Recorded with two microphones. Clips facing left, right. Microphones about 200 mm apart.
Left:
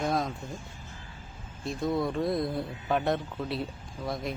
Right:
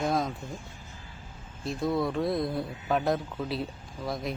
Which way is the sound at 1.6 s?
Centre (ahead or behind).